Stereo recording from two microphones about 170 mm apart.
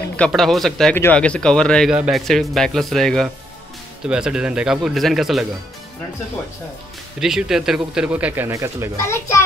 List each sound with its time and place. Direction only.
0.3 s speech: centre (ahead or behind)
7.2 s speech: 5° right (ahead or behind)
9.0 s a child's voice: 15° left (ahead or behind)